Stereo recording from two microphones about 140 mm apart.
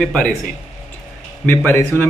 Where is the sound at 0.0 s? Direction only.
5° left (ahead or behind).